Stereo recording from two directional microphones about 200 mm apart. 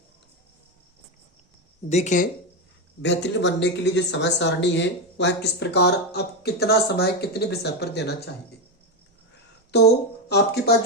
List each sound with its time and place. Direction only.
1.9 s speech: 35° left (ahead or behind)
3.0 s speech: 60° left (ahead or behind)
9.7 s speech: 55° left (ahead or behind)